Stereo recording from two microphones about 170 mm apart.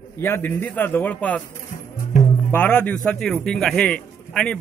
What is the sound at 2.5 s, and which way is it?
A man's voice, 10° left (ahead or behind).